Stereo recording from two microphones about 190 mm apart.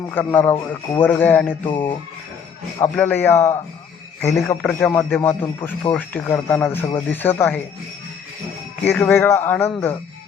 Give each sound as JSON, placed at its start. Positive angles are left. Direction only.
{"t": 0.1, "sound": "speech", "side_deg": 10}
{"t": 1.6, "sound": "music", "side_deg": 25}
{"t": 2.7, "sound": "speech", "side_deg": 10}
{"t": 8.8, "sound": "speech", "side_deg": 10}